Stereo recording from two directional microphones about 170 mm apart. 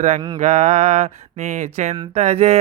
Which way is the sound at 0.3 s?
40° right (ahead or behind).